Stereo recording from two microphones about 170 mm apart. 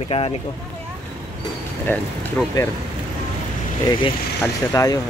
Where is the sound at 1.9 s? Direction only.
10° left (ahead or behind).